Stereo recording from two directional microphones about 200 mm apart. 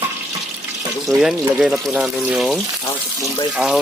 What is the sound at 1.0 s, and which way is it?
Speech, centre (ahead or behind).